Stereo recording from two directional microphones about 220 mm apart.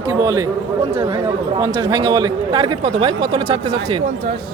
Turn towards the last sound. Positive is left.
turn(degrees=-25)  # may be behind; listen again after turning